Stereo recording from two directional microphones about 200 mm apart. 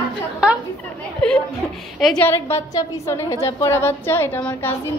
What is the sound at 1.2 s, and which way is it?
A woman's voice, 5° left (ahead or behind).